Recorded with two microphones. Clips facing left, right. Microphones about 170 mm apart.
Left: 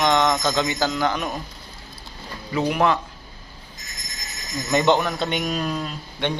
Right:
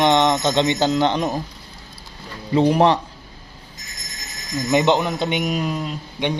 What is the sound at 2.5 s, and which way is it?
Speech, 30° right (ahead or behind).